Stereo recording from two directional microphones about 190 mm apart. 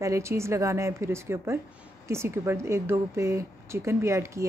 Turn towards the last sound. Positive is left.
turn(degrees=-15)  # may be behind; listen again after turning